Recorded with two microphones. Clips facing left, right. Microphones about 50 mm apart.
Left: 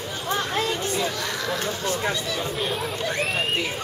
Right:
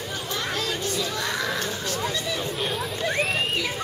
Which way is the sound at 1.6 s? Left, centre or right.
Left.